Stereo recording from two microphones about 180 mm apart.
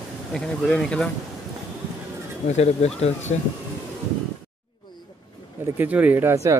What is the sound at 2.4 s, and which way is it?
Speech, 35° left (ahead or behind).